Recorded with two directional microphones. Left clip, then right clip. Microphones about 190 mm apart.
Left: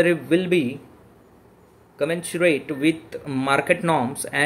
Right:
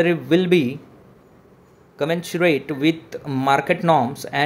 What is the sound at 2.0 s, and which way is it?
Speech, 20° right (ahead or behind).